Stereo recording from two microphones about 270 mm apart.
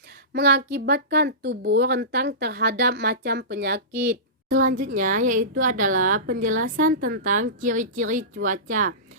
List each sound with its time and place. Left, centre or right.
0.3 s speech: right